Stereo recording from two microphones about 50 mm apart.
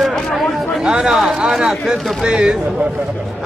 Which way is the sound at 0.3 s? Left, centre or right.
Centre.